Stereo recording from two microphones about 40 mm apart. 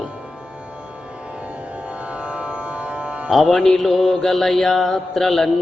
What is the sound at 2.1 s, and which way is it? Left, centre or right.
Music, right.